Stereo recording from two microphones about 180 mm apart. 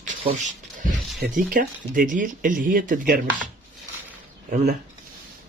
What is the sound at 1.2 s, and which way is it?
Speech, 50° right (ahead or behind).